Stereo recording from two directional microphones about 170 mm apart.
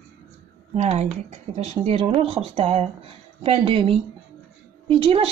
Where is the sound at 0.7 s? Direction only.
40° right (ahead or behind).